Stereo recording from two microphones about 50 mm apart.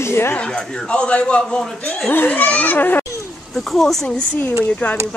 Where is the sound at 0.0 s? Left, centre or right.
Left.